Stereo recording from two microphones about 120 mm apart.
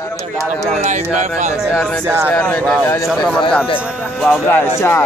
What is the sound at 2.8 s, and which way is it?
Speech, 25° left (ahead or behind).